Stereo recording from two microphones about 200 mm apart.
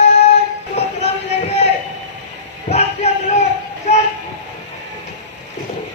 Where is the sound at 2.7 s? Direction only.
30° left (ahead or behind).